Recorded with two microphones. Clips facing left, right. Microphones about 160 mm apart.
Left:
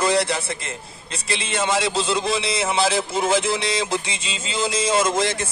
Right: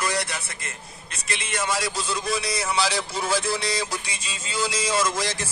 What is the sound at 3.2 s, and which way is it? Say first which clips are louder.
A man's voice: left 4 dB; 20° left (ahead or behind).